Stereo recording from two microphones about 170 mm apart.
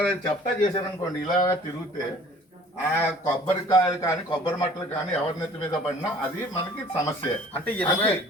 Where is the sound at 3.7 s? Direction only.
20° left (ahead or behind).